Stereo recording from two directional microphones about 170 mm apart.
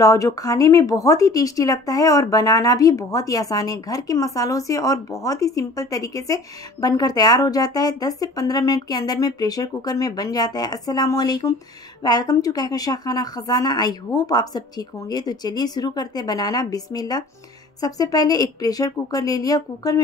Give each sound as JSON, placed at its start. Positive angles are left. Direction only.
{"t": 0.0, "sound": "speech", "side_deg": 20}